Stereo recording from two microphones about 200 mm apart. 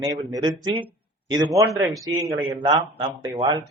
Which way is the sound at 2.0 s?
20° right (ahead or behind).